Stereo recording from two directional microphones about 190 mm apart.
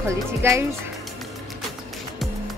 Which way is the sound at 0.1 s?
15° right (ahead or behind).